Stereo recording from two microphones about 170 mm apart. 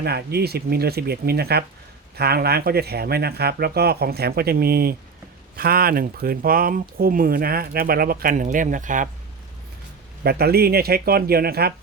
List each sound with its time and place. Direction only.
0.0 s speech: 70° right (ahead or behind); by 9.0 s 50° right (ahead or behind)
10.2 s speech: 65° right (ahead or behind)